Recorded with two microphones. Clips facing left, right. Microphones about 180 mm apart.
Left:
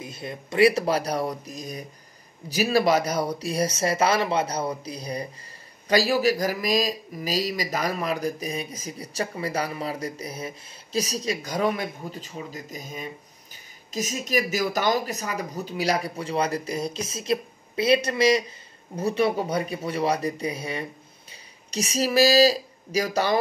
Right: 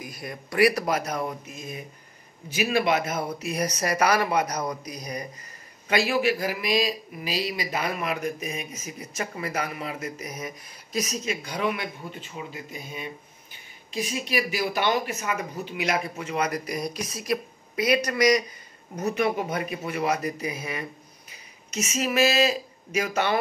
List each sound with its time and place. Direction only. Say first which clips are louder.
0.0 s a man's voice: left 2 dB; 25° left (ahead or behind)